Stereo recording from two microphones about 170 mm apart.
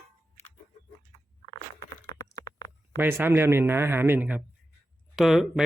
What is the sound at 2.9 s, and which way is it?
A man's voice, 15° right (ahead or behind).